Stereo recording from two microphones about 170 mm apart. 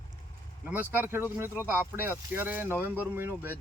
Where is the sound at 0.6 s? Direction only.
10° right (ahead or behind).